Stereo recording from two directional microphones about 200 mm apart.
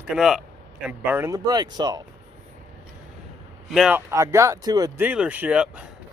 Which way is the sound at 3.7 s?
5° right (ahead or behind).